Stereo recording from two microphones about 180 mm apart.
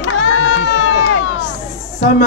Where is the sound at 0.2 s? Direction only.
90° left.